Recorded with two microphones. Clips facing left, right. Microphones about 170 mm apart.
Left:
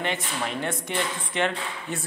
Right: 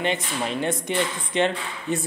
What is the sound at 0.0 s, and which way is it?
A man's voice, 20° right (ahead or behind).